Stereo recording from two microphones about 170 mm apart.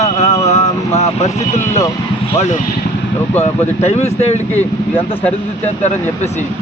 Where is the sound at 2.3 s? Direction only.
45° left (ahead or behind).